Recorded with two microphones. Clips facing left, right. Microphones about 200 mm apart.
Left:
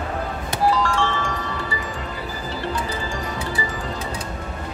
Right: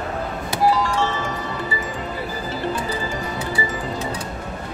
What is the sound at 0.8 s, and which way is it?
Music, 20° right (ahead or behind).